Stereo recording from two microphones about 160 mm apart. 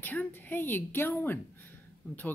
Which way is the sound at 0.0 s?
10° left (ahead or behind).